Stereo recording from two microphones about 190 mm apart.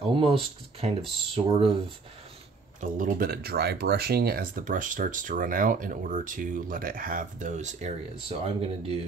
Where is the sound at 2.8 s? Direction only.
45° right (ahead or behind).